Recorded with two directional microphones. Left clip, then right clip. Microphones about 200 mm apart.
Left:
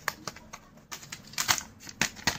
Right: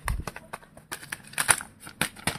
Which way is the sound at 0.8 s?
35° right (ahead or behind).